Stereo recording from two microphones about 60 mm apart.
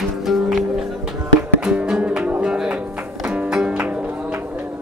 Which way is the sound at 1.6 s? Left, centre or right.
Centre.